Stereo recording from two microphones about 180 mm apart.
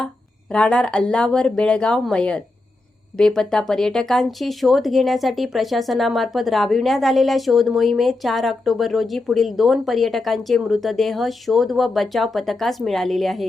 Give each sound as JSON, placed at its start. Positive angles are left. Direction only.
{"t": 0.5, "sound": "speech", "side_deg": 5}